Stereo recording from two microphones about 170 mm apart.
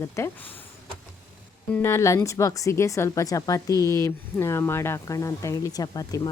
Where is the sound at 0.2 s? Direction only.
15° left (ahead or behind).